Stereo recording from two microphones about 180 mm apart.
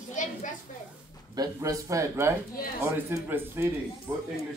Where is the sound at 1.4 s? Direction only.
20° right (ahead or behind).